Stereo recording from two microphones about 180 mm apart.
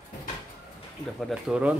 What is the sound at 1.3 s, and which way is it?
Speech, 5° right (ahead or behind).